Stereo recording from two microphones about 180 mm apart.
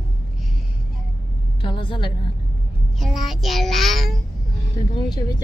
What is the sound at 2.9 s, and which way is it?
Child singing, centre (ahead or behind).